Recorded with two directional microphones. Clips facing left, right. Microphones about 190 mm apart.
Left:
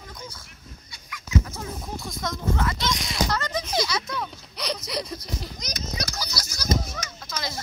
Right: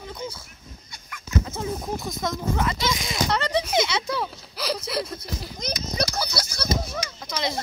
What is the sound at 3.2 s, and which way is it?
Speech, 30° right (ahead or behind).